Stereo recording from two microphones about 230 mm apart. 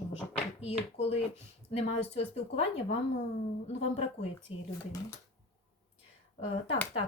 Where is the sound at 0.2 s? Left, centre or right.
Left.